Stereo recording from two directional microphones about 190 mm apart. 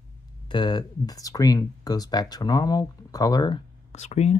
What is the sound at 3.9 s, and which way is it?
Speech, 35° left (ahead or behind).